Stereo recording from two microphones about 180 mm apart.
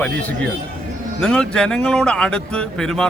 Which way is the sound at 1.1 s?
5° left (ahead or behind).